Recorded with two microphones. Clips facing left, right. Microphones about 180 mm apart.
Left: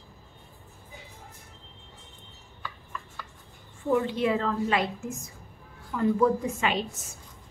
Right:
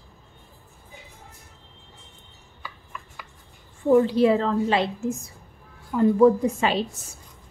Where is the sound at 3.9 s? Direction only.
35° right (ahead or behind).